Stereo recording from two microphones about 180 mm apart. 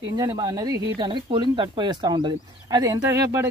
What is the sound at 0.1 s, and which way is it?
Speech, 20° right (ahead or behind).